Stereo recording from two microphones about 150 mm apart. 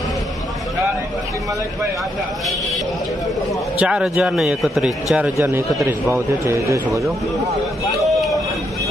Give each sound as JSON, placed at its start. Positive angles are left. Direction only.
{"t": 3.7, "sound": "a man's voice", "side_deg": -5}
{"t": 5.1, "sound": "a man's voice", "side_deg": -10}
{"t": 8.0, "sound": "vehicle", "side_deg": 0}